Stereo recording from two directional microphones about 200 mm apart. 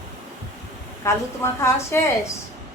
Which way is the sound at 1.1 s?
15° left (ahead or behind).